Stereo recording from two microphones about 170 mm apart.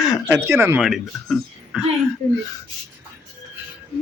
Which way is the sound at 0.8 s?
Centre (ahead or behind).